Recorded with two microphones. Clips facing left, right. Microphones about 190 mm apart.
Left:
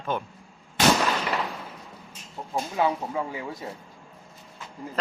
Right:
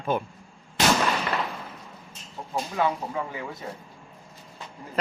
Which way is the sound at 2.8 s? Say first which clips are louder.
Left 1 dB; 15° left (ahead or behind).